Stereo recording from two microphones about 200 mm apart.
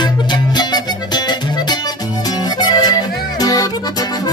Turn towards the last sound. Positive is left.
turn(degrees=20)  # may be behind; listen again after turning